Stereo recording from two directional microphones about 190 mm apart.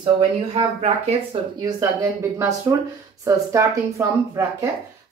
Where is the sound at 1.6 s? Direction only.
15° right (ahead or behind).